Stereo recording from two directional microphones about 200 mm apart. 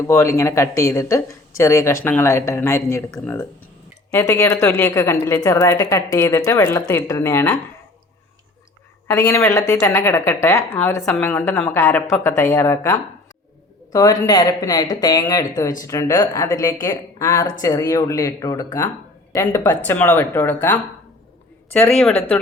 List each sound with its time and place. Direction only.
0.0 s speech: 15° left (ahead or behind)
9.0 s speech: 15° left (ahead or behind)
21.9 s speech: 5° left (ahead or behind)